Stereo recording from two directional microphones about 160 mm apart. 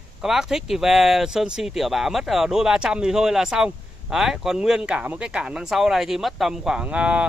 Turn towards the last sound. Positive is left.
turn(degrees=-10)  # may be behind; listen again after turning